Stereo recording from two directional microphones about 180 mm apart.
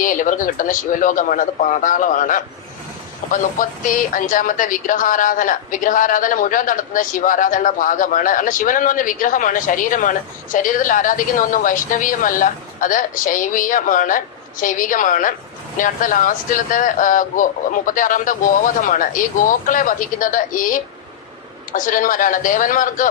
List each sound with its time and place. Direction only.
0.0 s a woman's voice: 45° left (ahead or behind)